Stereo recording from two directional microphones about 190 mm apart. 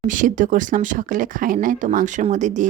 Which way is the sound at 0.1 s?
45° right (ahead or behind).